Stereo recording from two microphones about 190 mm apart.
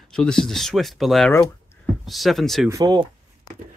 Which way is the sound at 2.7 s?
20° right (ahead or behind).